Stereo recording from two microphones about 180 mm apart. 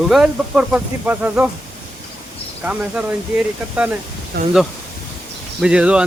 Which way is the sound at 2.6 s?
5° right (ahead or behind).